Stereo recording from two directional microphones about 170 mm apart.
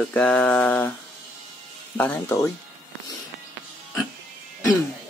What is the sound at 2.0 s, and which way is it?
Speech, 10° left (ahead or behind).